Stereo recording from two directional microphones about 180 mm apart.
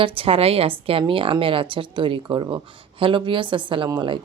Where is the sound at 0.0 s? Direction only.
30° right (ahead or behind).